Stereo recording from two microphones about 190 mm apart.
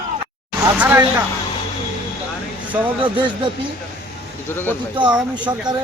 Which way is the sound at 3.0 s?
25° right (ahead or behind).